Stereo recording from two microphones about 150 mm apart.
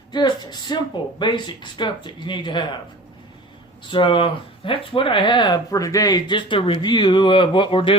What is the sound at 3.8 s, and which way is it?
Speech, 35° left (ahead or behind).